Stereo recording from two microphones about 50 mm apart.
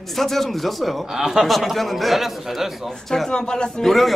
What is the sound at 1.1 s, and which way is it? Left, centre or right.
Speech, centre.